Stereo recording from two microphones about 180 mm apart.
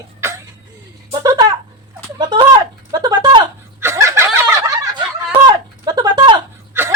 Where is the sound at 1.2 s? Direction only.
20° right (ahead or behind).